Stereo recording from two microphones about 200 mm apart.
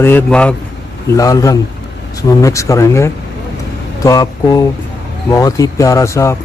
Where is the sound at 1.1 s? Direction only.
15° left (ahead or behind).